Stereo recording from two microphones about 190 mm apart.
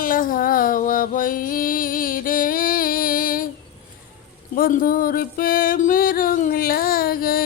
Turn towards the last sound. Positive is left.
turn(degrees=50)  # may be behind; listen again after turning